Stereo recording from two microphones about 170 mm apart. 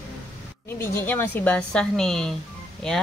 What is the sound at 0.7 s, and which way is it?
A woman's voice, 15° left (ahead or behind).